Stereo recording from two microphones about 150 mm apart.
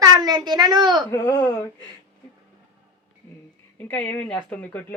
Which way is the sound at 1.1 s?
15° left (ahead or behind).